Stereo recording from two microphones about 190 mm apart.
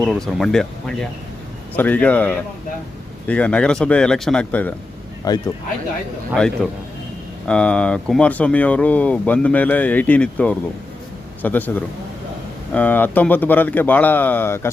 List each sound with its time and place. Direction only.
0.0 s speech: centre (ahead or behind)
5.3 s speech: 20° left (ahead or behind)
6.3 s speech: 5° left (ahead or behind)